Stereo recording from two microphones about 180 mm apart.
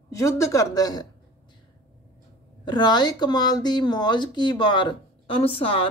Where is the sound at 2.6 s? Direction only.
25° left (ahead or behind).